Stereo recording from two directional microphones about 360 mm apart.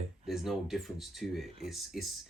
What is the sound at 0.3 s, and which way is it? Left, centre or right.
Speech, centre.